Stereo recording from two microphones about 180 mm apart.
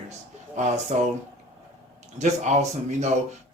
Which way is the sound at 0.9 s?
35° right (ahead or behind).